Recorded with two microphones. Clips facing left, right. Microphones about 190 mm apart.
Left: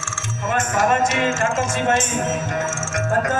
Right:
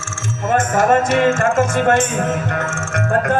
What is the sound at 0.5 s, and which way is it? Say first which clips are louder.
Music: right 5 dB; 55° right (ahead or behind).